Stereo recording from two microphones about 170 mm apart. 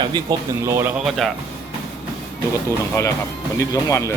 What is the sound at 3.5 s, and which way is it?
Speech, 20° left (ahead or behind).